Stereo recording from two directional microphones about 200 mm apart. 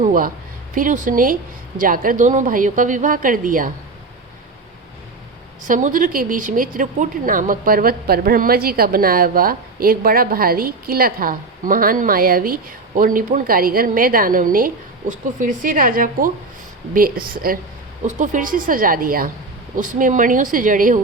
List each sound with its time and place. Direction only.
0.0 s a sound: 40° right (ahead or behind)
0.8 s a woman's voice: 40° right (ahead or behind)
5.6 s a woman's voice: 40° right (ahead or behind)